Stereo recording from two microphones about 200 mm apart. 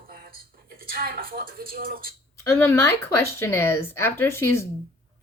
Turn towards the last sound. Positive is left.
turn(degrees=10)  # may be behind; listen again after turning